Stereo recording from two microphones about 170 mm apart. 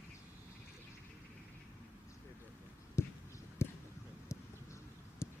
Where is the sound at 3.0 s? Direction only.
15° left (ahead or behind).